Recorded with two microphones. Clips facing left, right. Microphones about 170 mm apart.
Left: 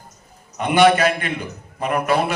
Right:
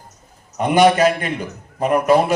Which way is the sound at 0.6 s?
40° right (ahead or behind).